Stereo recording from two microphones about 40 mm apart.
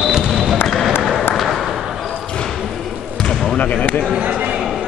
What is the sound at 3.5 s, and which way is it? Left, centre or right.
Basketball bounce, left.